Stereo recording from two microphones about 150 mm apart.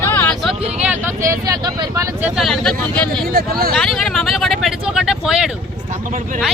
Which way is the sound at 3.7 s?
Centre (ahead or behind).